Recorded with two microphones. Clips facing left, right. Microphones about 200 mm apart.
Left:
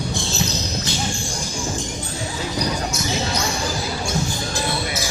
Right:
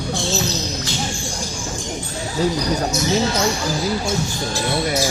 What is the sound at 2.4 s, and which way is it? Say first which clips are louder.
Speech: right 12 dB; 40° right (ahead or behind).